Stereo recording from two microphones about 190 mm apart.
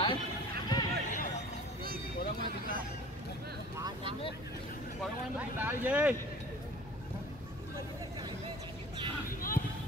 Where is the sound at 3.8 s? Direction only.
25° right (ahead or behind).